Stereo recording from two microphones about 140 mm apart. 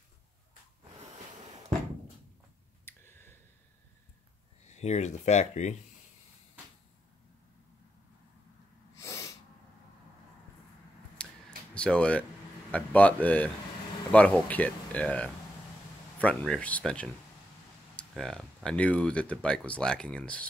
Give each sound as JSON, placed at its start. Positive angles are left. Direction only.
{"t": 2.8, "sound": "a sound", "side_deg": 15}
{"t": 4.6, "sound": "speech", "side_deg": 55}
{"t": 8.9, "sound": "sneeze", "side_deg": 20}
{"t": 11.2, "sound": "scissors", "side_deg": 10}
{"t": 11.7, "sound": "speech", "side_deg": 10}